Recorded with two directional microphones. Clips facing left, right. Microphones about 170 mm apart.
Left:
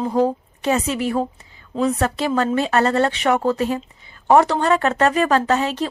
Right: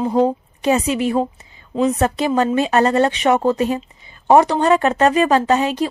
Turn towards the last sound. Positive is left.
turn(degrees=-15)  # may be behind; listen again after turning